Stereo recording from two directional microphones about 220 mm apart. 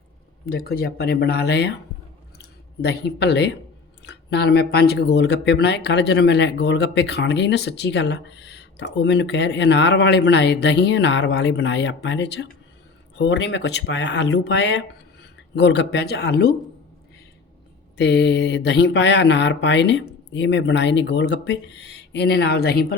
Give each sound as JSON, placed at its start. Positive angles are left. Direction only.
{"t": 0.5, "sound": "speech", "side_deg": 45}
{"t": 2.8, "sound": "speech", "side_deg": 50}
{"t": 17.9, "sound": "speech", "side_deg": 50}